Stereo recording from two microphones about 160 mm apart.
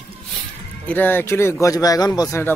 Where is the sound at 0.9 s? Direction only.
10° left (ahead or behind).